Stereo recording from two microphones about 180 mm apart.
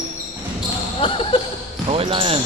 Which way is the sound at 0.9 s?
30° left (ahead or behind).